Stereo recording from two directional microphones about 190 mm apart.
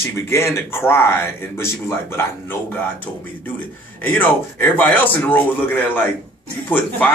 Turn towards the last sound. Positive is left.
turn(degrees=10)  # may be behind; listen again after turning